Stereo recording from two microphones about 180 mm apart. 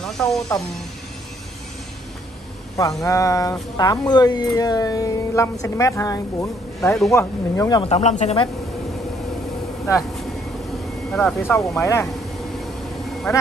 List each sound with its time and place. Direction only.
0.0 s snake: centre (ahead or behind)
2.8 s speech: 20° left (ahead or behind)
7.8 s speech: 35° left (ahead or behind)
11.1 s speech: 5° left (ahead or behind)
11.8 s speech: 15° left (ahead or behind)